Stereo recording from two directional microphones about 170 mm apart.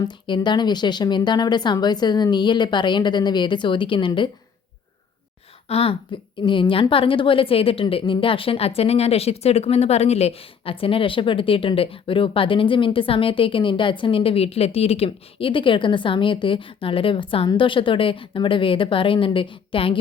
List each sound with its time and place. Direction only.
0.0 s a woman's voice: 25° left (ahead or behind)
5.6 s a woman's voice: 35° left (ahead or behind)